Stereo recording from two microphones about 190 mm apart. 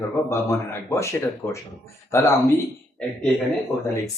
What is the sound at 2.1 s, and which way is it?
Speech, 15° left (ahead or behind).